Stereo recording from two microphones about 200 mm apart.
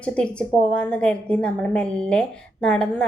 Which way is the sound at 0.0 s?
5° left (ahead or behind).